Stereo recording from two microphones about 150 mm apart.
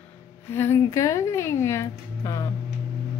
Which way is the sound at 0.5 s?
15° left (ahead or behind).